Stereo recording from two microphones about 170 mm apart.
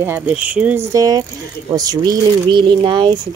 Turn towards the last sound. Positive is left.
turn(degrees=-25)  # may be behind; listen again after turning